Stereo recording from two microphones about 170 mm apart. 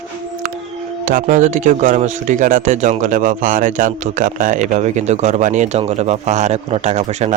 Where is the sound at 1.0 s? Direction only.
50° right (ahead or behind).